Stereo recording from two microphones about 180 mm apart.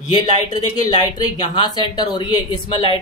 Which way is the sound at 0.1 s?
25° left (ahead or behind).